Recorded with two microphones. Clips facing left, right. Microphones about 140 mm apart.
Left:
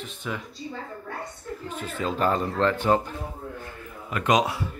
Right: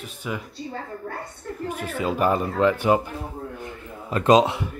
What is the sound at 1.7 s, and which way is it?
Speech, 10° right (ahead or behind).